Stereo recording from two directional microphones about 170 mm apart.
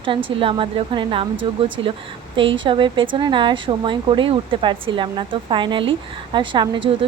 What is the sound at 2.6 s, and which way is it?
Speech, 30° right (ahead or behind).